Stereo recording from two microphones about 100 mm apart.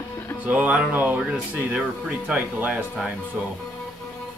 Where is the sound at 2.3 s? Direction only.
10° right (ahead or behind).